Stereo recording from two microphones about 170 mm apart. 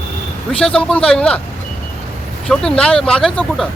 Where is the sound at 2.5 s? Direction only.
5° left (ahead or behind).